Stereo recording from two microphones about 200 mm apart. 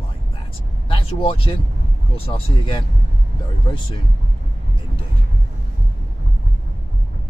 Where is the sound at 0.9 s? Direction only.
25° left (ahead or behind).